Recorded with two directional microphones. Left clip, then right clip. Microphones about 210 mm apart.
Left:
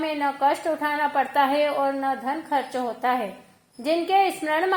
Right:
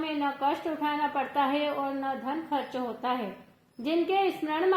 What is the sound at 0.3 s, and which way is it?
A woman's voice, 25° left (ahead or behind).